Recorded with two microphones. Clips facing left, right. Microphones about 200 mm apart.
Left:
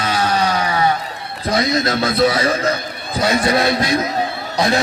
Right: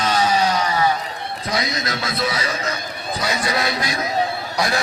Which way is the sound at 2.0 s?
30° left (ahead or behind).